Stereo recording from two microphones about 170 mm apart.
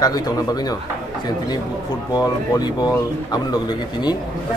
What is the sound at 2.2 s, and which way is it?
Speech, 25° left (ahead or behind).